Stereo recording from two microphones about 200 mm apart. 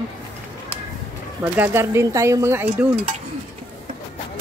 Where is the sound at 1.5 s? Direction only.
10° right (ahead or behind).